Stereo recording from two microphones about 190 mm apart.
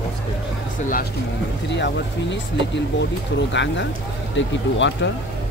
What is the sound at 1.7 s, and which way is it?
Speech, 65° left (ahead or behind).